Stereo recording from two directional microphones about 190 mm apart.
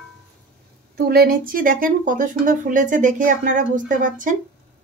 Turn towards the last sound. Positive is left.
turn(degrees=-45)  # may be behind; listen again after turning